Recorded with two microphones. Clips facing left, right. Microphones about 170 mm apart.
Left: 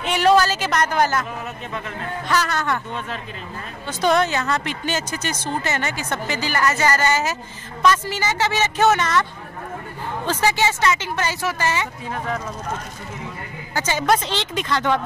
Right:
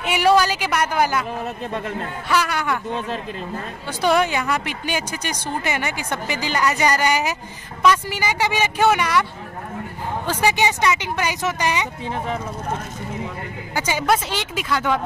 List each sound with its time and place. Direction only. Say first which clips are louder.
0.0 s speech: even; 10° right (ahead or behind)
2.2 s speech: even; 10° right (ahead or behind)
4.0 s speech: even; 10° right (ahead or behind)
10.2 s speech: even; 15° right (ahead or behind)
13.7 s speech: even; 10° right (ahead or behind)